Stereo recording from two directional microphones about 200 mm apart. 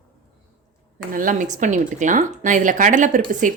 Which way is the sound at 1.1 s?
40° right (ahead or behind).